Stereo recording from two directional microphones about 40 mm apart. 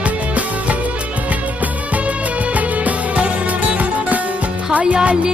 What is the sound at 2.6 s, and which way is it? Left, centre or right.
Music, right.